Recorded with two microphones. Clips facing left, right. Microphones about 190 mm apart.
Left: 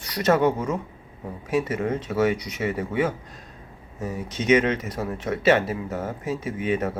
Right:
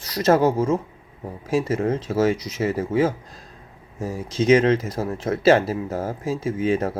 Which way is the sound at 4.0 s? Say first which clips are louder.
Right 5 dB; 30° right (ahead or behind).